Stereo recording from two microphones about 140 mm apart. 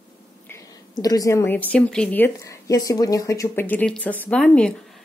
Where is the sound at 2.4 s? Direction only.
25° left (ahead or behind).